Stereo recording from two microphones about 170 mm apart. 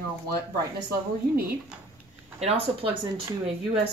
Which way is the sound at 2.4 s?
35° right (ahead or behind).